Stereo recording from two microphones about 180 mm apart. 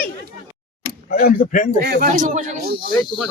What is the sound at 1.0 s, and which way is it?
Speech, 50° left (ahead or behind).